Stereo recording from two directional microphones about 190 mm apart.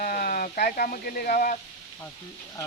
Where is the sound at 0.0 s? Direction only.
50° left (ahead or behind).